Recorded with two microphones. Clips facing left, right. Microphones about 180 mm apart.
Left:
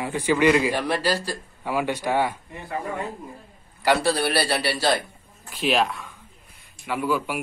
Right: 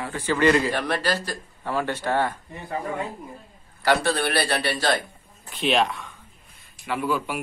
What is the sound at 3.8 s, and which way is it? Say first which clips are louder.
A man's voice: left 1 dB; 10° left (ahead or behind).